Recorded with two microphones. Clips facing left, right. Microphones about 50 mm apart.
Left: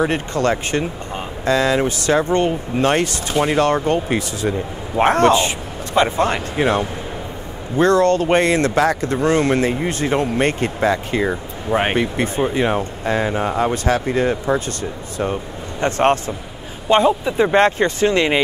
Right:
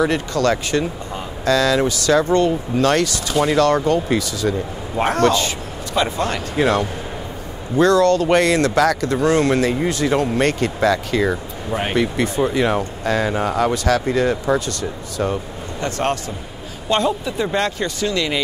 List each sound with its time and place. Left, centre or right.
0.0 s speech: left